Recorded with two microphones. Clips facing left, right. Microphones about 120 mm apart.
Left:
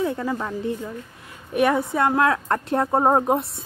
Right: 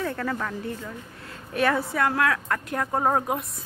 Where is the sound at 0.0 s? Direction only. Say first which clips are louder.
Left 4 dB; 15° left (ahead or behind).